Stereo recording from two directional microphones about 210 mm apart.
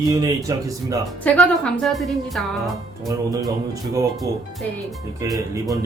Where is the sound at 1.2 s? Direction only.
5° left (ahead or behind).